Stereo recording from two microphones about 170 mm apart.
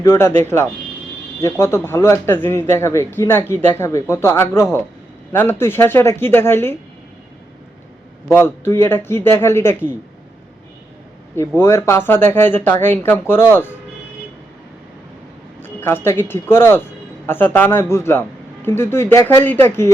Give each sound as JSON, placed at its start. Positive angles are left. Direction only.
{"t": 0.0, "sound": "a man's voice", "side_deg": 15}
{"t": 8.3, "sound": "a man's voice", "side_deg": 15}
{"t": 11.3, "sound": "a man's voice", "side_deg": 15}
{"t": 15.6, "sound": "a man's voice", "side_deg": 10}